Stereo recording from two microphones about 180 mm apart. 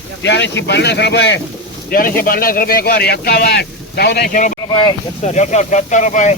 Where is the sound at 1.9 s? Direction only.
50° left (ahead or behind).